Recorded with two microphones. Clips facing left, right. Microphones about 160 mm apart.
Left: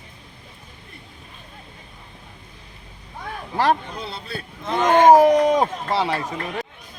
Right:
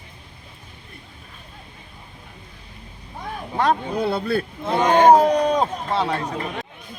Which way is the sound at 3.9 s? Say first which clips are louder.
Right 11 dB; 60° right (ahead or behind).